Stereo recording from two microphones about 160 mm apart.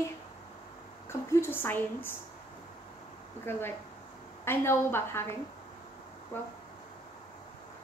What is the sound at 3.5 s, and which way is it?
A woman's voice, 15° left (ahead or behind).